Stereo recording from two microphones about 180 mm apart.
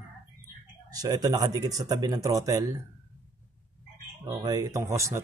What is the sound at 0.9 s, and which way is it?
Speech, 20° right (ahead or behind).